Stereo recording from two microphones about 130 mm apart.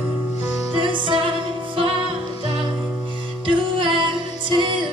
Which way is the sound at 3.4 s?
40° right (ahead or behind).